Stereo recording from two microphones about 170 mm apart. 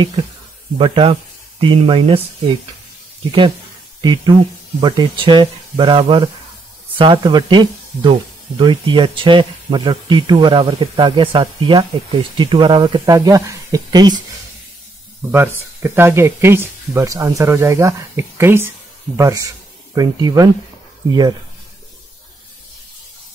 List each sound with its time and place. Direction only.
0.7 s speech: 30° right (ahead or behind)
3.3 s speech: 25° right (ahead or behind)
4.7 s speech: 25° right (ahead or behind)
15.3 s speech: 15° right (ahead or behind)